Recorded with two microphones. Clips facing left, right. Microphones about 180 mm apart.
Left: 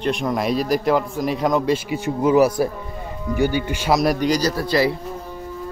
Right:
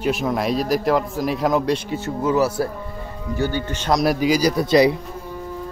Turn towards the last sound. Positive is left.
turn(degrees=-20)  # may be behind; listen again after turning